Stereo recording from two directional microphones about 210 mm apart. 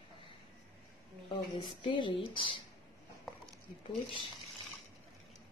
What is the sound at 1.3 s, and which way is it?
Speech, 25° left (ahead or behind).